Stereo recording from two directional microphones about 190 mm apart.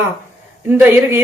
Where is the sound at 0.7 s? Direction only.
10° right (ahead or behind).